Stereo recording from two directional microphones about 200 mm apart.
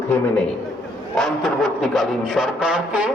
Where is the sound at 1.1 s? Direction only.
Centre (ahead or behind).